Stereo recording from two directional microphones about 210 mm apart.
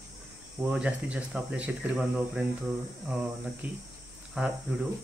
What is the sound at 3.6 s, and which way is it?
Speech, 5° right (ahead or behind).